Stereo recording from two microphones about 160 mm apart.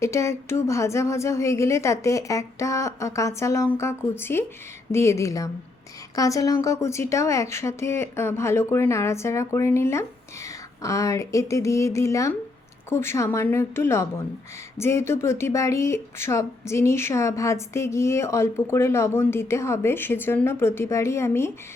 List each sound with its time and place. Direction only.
0.0 s speech: 20° left (ahead or behind)